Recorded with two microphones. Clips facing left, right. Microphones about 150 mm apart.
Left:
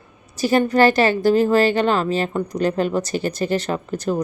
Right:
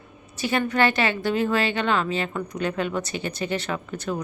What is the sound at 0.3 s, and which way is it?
Speech, 40° left (ahead or behind).